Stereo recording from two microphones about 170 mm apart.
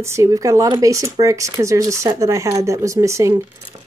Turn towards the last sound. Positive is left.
turn(degrees=-15)  # may be behind; listen again after turning